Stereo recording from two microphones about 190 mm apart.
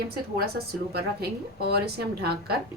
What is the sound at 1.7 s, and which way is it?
Speech, 55° right (ahead or behind).